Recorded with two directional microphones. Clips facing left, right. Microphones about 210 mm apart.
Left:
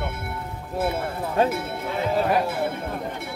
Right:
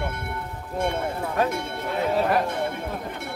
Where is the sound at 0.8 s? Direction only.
5° left (ahead or behind).